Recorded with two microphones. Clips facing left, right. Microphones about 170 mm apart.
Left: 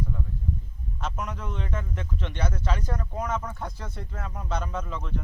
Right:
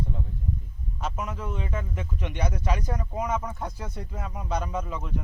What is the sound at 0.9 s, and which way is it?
A man's voice, 5° right (ahead or behind).